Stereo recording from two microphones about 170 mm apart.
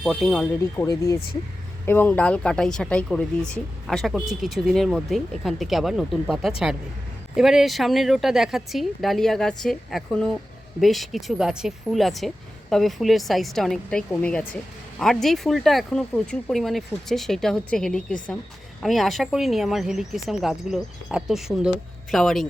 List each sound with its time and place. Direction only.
0.0 s speech: centre (ahead or behind)
0.4 s speech: 15° left (ahead or behind); by 22.4 s centre (ahead or behind)